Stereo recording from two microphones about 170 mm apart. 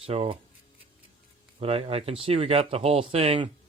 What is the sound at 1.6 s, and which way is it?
Speech, 35° right (ahead or behind).